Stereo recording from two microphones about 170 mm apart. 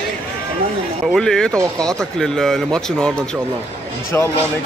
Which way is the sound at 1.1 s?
5° left (ahead or behind).